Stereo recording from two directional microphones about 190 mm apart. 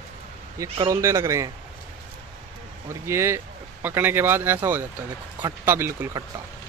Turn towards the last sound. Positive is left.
turn(degrees=-10)  # may be behind; listen again after turning